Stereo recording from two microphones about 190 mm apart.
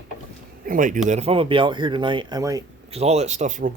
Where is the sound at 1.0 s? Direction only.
35° right (ahead or behind); by 2.6 s 20° right (ahead or behind).